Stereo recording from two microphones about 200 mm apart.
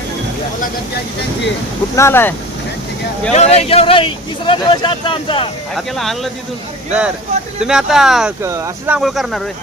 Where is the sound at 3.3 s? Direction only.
35° left (ahead or behind).